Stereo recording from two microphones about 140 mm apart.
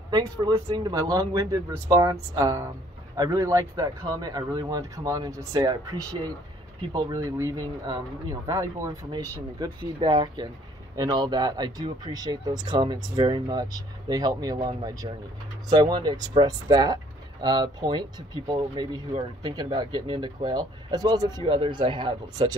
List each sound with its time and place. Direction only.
0.7 s speech: 30° right (ahead or behind)